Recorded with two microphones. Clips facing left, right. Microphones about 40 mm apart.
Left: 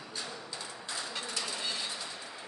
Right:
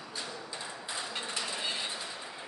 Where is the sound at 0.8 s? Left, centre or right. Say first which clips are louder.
Right 1 dB; right.